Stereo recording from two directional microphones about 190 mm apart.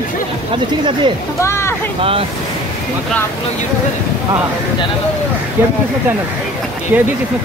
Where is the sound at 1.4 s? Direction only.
15° left (ahead or behind).